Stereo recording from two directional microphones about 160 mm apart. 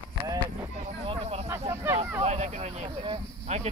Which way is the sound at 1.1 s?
40° right (ahead or behind).